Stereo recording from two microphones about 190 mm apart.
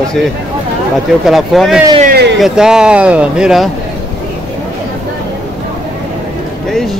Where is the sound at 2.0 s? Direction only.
60° right (ahead or behind).